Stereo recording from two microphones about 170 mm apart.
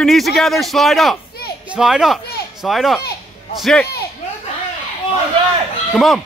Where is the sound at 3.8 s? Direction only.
65° left (ahead or behind).